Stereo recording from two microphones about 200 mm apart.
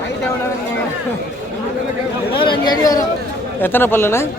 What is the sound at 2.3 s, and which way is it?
Chatter, 25° left (ahead or behind).